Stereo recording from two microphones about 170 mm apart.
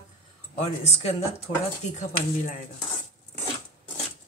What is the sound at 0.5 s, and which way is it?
Speech, 40° left (ahead or behind).